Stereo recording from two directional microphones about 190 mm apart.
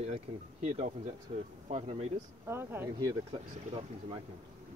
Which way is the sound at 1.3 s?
35° right (ahead or behind).